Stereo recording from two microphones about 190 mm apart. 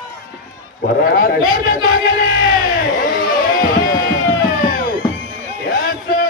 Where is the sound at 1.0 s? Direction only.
50° left (ahead or behind).